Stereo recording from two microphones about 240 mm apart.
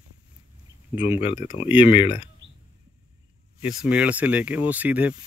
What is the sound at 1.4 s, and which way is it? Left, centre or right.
Speech, left.